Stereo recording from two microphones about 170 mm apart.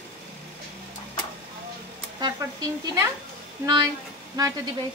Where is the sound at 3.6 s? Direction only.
25° right (ahead or behind).